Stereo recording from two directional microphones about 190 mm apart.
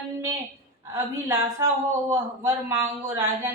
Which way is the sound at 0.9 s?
15° right (ahead or behind).